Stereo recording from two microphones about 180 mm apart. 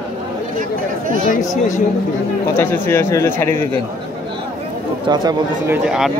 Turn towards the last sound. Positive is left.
turn(degrees=-5)  # may be behind; listen again after turning